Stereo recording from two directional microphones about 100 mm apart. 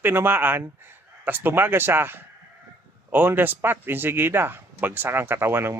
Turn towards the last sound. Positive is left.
turn(degrees=-25)  # may be behind; listen again after turning